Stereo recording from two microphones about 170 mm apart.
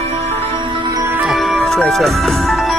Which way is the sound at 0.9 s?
15° right (ahead or behind).